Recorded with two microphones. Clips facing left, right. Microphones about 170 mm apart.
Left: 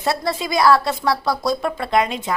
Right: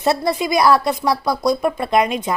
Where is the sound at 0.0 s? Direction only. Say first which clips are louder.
Right 4 dB; 20° right (ahead or behind).